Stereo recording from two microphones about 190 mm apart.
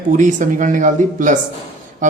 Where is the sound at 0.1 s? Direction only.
40° right (ahead or behind).